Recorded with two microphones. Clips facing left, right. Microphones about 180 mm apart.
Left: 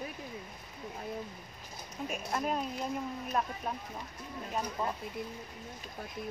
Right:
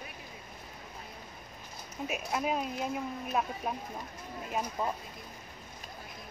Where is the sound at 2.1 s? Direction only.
5° right (ahead or behind).